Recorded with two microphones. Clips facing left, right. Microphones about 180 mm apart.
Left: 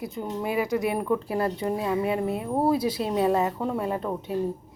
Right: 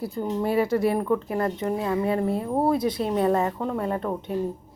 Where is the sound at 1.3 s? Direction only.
30° left (ahead or behind).